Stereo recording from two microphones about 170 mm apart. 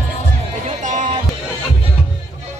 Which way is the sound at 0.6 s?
50° right (ahead or behind).